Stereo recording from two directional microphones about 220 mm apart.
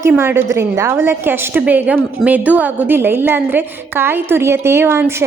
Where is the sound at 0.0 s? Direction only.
10° right (ahead or behind).